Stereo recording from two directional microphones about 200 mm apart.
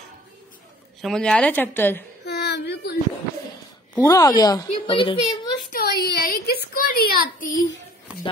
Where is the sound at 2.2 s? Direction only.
55° left (ahead or behind).